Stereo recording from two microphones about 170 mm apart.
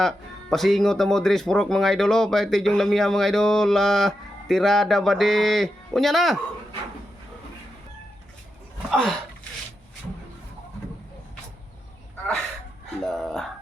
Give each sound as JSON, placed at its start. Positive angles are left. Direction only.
{"t": 0.0, "sound": "speech", "side_deg": 0}
{"t": 8.9, "sound": "speech", "side_deg": 0}
{"t": 13.0, "sound": "speech", "side_deg": 5}